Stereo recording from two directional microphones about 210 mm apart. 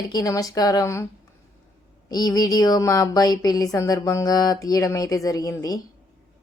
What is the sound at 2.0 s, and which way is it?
A woman's voice, 20° left (ahead or behind).